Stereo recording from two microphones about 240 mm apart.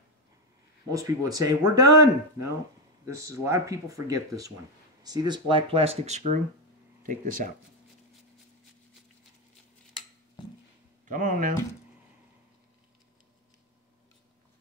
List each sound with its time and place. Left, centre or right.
0.9 s speech: centre; by 7.5 s right
11.1 s speech: right